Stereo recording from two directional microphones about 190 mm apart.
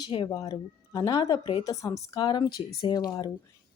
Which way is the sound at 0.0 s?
25° left (ahead or behind).